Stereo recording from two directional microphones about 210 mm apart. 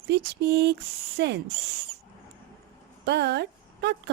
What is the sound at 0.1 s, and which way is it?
A woman's voice, 55° right (ahead or behind).